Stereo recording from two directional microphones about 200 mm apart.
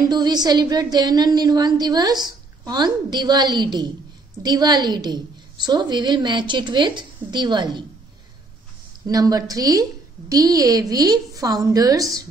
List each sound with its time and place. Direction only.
0.1 s a woman's voice: 20° right (ahead or behind)
9.0 s a woman's voice: 20° right (ahead or behind)